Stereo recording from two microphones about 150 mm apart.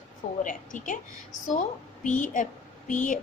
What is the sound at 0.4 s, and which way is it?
Speech, 60° left (ahead or behind).